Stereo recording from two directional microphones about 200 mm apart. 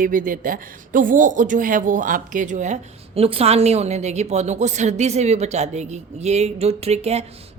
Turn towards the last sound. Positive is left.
turn(degrees=-30)  # may be behind; listen again after turning